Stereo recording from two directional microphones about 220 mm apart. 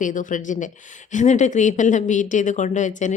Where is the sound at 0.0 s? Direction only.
35° left (ahead or behind).